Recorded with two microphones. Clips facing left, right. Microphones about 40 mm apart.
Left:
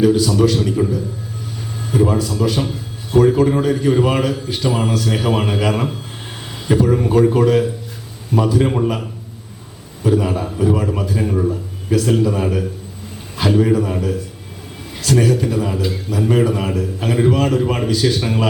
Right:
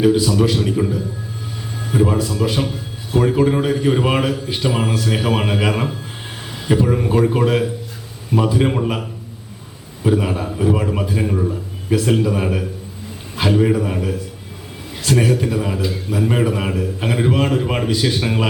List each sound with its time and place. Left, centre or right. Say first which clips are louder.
0.0 s a man's voice: left 1 dB; centre
2.0 s a man's voice: left 1 dB; centre
2.2 s a man's voice: left 1 dB; centre